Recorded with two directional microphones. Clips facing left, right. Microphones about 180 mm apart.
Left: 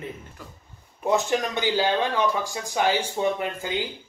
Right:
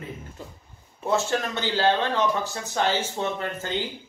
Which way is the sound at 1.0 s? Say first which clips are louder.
Left 2 dB; 15° left (ahead or behind).